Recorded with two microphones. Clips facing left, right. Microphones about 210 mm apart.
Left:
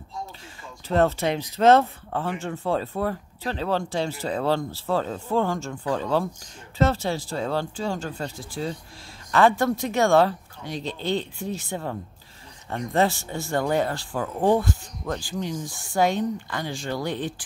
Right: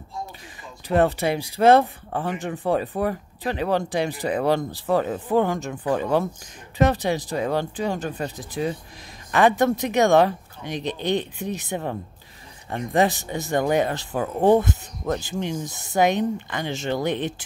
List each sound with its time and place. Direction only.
0.8 s speech: 15° right (ahead or behind)